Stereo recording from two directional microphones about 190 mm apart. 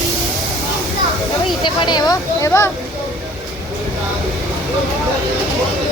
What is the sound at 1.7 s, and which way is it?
Speech, 20° left (ahead or behind).